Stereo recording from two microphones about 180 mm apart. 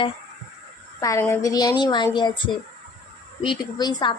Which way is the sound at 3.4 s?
25° left (ahead or behind).